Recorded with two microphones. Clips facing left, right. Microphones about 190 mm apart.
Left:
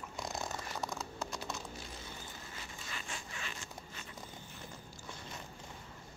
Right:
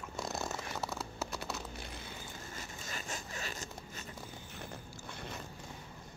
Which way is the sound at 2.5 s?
45° right (ahead or behind).